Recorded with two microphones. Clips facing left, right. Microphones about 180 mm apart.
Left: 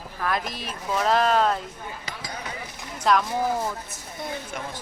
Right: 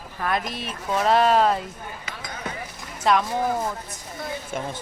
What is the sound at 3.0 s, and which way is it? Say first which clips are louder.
Speech: right 1 dB; centre (ahead or behind).